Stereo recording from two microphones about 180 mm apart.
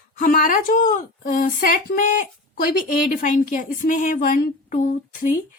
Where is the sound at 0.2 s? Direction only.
55° left (ahead or behind).